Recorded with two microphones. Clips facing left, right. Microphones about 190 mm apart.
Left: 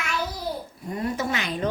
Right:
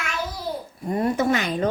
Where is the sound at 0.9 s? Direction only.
55° right (ahead or behind).